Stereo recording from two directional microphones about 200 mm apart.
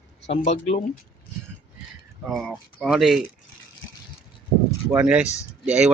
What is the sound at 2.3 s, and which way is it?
Speech, centre (ahead or behind).